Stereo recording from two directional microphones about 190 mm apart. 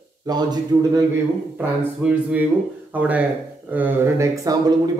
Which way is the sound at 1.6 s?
10° right (ahead or behind).